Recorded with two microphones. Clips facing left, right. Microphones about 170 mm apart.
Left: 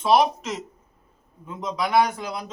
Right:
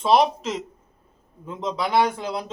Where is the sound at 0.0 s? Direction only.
30° right (ahead or behind).